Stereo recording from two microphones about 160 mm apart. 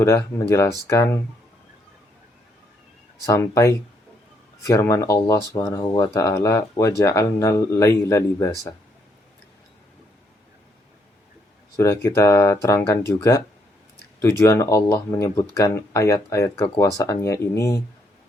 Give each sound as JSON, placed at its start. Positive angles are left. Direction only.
{"t": 0.0, "sound": "speech", "side_deg": 20}
{"t": 3.2, "sound": "speech", "side_deg": 20}
{"t": 11.8, "sound": "speech", "side_deg": 15}